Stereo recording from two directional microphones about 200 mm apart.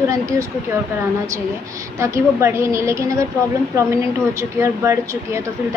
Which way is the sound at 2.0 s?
15° right (ahead or behind).